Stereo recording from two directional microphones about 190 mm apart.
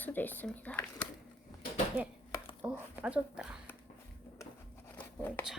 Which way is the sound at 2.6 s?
20° right (ahead or behind).